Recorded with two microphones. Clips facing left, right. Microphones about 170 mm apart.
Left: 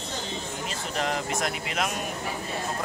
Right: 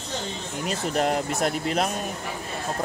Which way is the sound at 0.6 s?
40° right (ahead or behind).